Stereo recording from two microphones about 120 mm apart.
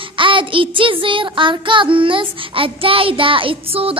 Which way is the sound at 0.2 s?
45° right (ahead or behind).